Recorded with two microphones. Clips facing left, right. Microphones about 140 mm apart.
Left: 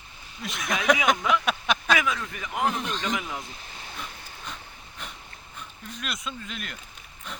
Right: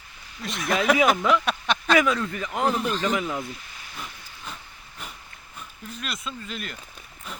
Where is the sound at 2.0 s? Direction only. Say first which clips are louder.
Right 7 dB; 45° right (ahead or behind).